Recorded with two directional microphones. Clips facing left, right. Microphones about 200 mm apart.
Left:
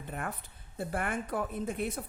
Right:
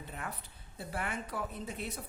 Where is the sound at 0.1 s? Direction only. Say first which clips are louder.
Left 8 dB; 50° left (ahead or behind).